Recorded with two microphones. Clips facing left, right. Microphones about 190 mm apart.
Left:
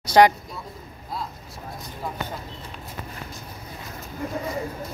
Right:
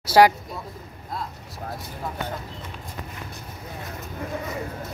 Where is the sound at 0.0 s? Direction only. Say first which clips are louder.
Even; 5° right (ahead or behind).